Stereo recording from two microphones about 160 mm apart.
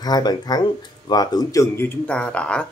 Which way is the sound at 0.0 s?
25° left (ahead or behind).